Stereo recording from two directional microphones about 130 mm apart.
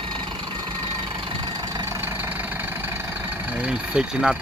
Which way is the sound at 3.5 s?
10° right (ahead or behind).